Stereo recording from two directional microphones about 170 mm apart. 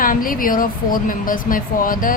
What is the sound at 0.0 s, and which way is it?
A woman's voice, 55° left (ahead or behind).